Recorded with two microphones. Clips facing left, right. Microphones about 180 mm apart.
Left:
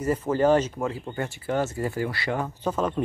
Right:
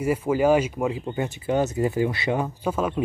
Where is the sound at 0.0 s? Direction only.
10° right (ahead or behind).